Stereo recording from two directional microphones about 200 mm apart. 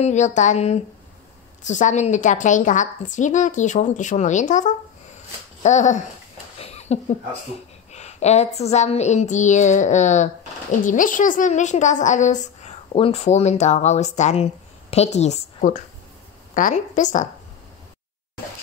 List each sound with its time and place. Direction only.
0.0 s a woman's voice: 35° left (ahead or behind)
6.6 s a sound: 30° left (ahead or behind)
7.9 s a woman's voice: 35° left (ahead or behind)